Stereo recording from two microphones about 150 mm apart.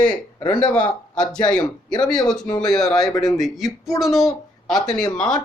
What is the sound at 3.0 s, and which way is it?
Speech, 25° left (ahead or behind).